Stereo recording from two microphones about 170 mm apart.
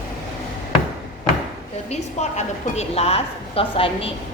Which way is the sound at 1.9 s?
40° left (ahead or behind).